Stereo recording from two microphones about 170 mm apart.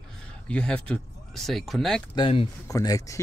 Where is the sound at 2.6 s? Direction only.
20° left (ahead or behind).